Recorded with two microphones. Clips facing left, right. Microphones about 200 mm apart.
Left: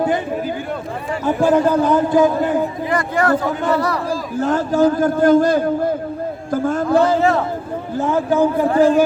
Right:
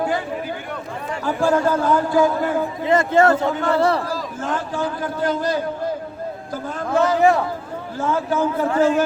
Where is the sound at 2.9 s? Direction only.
25° right (ahead or behind).